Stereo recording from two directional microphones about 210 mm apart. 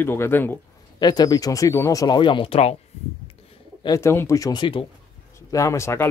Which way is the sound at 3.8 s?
15° left (ahead or behind).